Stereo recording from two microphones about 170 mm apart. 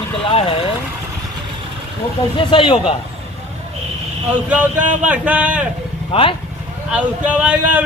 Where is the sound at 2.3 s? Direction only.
30° left (ahead or behind).